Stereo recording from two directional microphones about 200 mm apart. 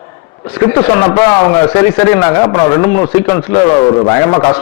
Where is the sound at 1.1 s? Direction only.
10° left (ahead or behind).